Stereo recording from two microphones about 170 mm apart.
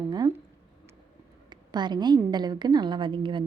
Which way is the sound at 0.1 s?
25° right (ahead or behind).